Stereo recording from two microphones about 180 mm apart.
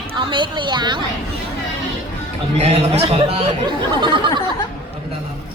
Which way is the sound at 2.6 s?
35° right (ahead or behind).